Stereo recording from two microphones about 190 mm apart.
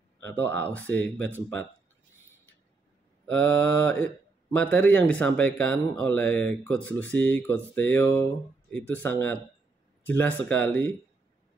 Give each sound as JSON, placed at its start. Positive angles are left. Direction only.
{"t": 0.2, "sound": "speech", "side_deg": 10}
{"t": 3.3, "sound": "speech", "side_deg": 10}